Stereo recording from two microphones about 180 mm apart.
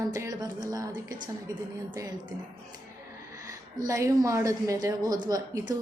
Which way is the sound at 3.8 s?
15° right (ahead or behind).